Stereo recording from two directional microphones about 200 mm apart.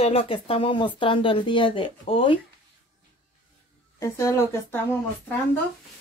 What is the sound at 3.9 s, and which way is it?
Speech, 15° left (ahead or behind).